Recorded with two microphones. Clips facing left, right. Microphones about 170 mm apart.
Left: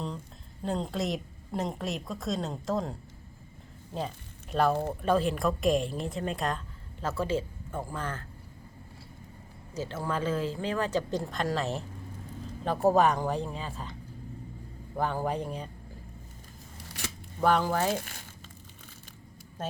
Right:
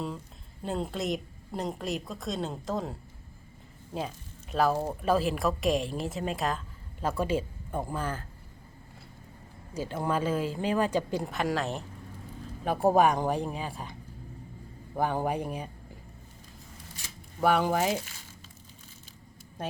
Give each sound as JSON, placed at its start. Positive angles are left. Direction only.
{"t": 0.6, "sound": "a woman's voice", "side_deg": 0}
{"t": 4.5, "sound": "a woman's voice", "side_deg": 0}
{"t": 9.7, "sound": "speech", "side_deg": -10}
{"t": 12.6, "sound": "speech", "side_deg": -15}
{"t": 14.9, "sound": "speech", "side_deg": -15}
{"t": 17.4, "sound": "speech", "side_deg": -15}